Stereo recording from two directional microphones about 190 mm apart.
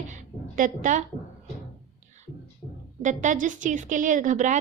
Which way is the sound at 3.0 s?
40° right (ahead or behind).